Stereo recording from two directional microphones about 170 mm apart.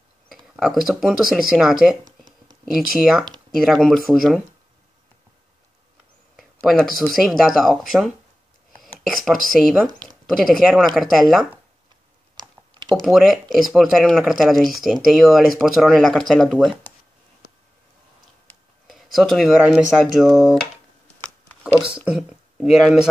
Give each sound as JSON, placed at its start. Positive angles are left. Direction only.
{"t": 0.6, "sound": "speech", "side_deg": 0}
{"t": 6.3, "sound": "speech", "side_deg": 0}
{"t": 12.4, "sound": "computer keyboard", "side_deg": -25}
{"t": 12.9, "sound": "speech", "side_deg": 0}
{"t": 18.9, "sound": "speech", "side_deg": 0}
{"t": 21.7, "sound": "speech", "side_deg": -5}